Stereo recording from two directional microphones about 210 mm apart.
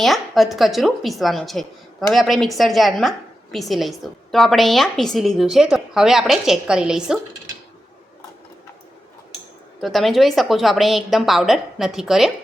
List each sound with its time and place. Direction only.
0.0 s a woman's voice: centre (ahead or behind)
9.8 s a woman's voice: centre (ahead or behind)